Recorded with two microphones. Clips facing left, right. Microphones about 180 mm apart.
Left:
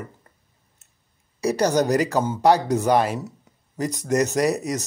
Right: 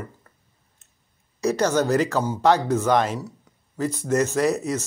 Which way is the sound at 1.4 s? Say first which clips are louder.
Left 1 dB; 15° left (ahead or behind).